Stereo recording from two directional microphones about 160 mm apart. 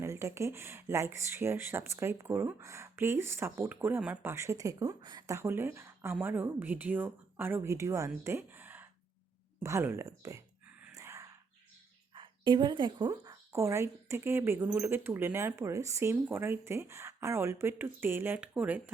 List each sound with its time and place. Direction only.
0.0 s a woman's voice: 15° right (ahead or behind)
10.9 s a sound: 20° right (ahead or behind)
12.1 s a woman's voice: 30° right (ahead or behind); by 18.8 s 10° right (ahead or behind)